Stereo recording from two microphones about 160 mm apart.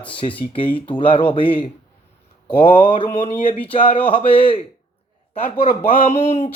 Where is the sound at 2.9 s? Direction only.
35° left (ahead or behind).